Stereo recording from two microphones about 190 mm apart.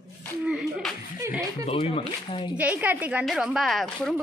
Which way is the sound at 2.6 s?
10° right (ahead or behind).